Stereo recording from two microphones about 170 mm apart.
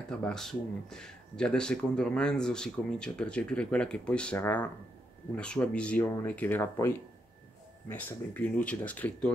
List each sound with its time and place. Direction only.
0.1 s speech: 5° left (ahead or behind)
7.9 s speech: 10° left (ahead or behind)